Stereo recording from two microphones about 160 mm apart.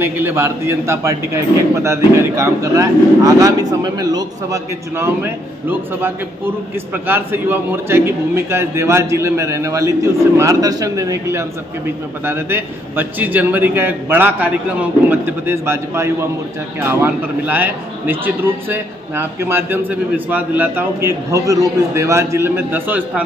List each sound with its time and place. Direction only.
0.0 s a man's voice: 15° right (ahead or behind)